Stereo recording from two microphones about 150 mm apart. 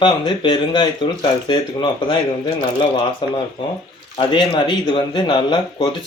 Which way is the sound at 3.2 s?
30° left (ahead or behind).